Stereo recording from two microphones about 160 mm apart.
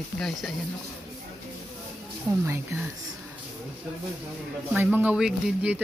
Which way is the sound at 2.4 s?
15° right (ahead or behind).